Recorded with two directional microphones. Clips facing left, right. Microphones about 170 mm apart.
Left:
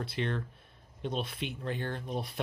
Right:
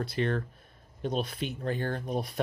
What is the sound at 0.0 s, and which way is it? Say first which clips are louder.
Speech: right 4 dB; 40° right (ahead or behind).